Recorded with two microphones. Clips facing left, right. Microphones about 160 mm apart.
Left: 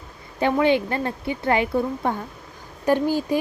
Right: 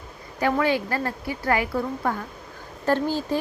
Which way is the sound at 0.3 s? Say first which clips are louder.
Left 3 dB; 20° left (ahead or behind).